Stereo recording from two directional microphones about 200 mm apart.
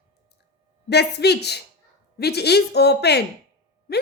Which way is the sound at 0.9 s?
55° left (ahead or behind).